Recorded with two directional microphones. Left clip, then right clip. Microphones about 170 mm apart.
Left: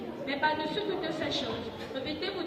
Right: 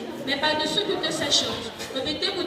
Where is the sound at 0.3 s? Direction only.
25° left (ahead or behind).